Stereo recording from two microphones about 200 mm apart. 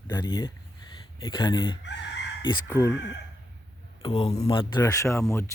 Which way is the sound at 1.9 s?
60° left (ahead or behind).